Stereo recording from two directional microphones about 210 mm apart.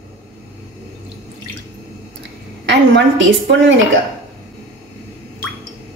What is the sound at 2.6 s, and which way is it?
A woman's voice, 60° right (ahead or behind).